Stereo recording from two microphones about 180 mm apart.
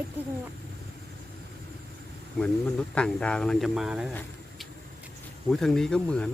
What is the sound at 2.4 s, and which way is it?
Speech, 5° left (ahead or behind).